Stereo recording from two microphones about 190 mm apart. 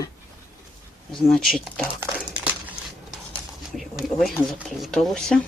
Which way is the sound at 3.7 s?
Centre (ahead or behind).